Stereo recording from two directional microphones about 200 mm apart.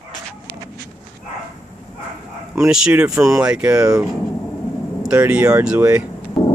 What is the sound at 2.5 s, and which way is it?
Speech, 5° right (ahead or behind).